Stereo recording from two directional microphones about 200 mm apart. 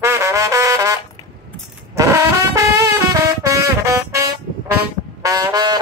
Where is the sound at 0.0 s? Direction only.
15° right (ahead or behind).